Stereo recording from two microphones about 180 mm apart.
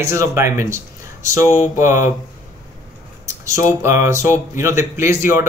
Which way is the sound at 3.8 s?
15° right (ahead or behind).